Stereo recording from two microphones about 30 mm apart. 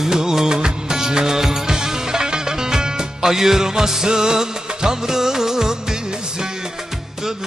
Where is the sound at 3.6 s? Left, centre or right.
Centre.